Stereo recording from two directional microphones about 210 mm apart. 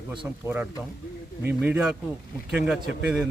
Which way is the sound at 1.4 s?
10° right (ahead or behind).